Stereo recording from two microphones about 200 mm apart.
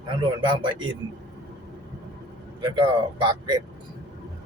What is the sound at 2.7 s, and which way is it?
Speech, 25° right (ahead or behind).